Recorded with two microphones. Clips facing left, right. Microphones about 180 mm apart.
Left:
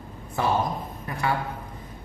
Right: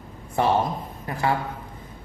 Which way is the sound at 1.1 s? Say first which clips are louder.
Right 3 dB; 30° right (ahead or behind).